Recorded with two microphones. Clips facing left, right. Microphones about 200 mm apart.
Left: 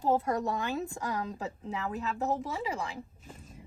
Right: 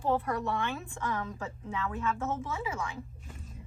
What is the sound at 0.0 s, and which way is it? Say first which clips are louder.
A woman's voice: left 2 dB; 40° left (ahead or behind).